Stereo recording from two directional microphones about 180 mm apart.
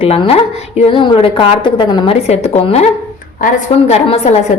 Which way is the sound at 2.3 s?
35° left (ahead or behind).